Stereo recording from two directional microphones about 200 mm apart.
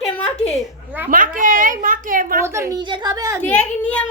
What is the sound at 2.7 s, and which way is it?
Speech, 25° right (ahead or behind).